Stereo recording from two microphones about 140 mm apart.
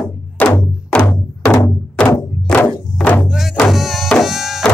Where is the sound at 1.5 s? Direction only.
20° left (ahead or behind).